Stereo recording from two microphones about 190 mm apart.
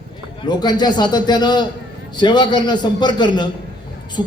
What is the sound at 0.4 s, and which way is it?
A man's voice, 20° left (ahead or behind).